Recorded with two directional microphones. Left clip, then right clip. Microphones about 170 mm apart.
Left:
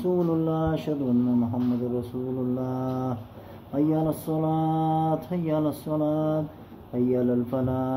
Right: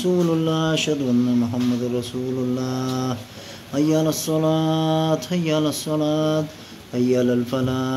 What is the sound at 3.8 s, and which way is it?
Speech, 15° right (ahead or behind).